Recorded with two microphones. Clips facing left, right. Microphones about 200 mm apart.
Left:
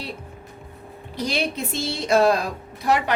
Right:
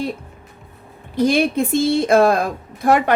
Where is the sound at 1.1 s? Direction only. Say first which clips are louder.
Right 9 dB; 50° right (ahead or behind).